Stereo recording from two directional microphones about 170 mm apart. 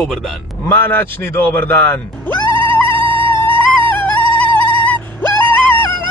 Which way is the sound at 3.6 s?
10° left (ahead or behind).